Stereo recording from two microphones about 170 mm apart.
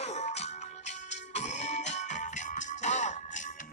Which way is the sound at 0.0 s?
40° left (ahead or behind).